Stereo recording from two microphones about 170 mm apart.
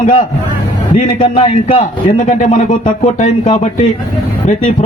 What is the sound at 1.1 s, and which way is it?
Speech, 35° left (ahead or behind).